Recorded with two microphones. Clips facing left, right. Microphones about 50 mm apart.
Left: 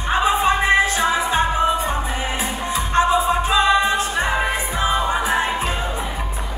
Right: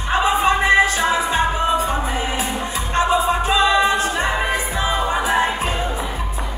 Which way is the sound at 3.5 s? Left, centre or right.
Right.